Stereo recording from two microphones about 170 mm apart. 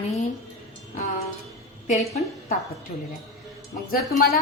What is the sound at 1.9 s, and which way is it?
Speech, 45° left (ahead or behind).